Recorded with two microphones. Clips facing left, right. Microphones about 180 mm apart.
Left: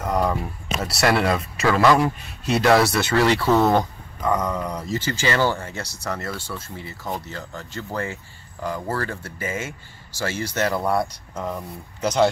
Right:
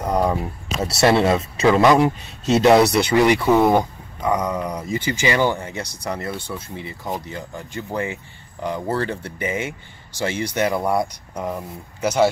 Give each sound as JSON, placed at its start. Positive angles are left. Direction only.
{"t": 0.0, "sound": "speech", "side_deg": -20}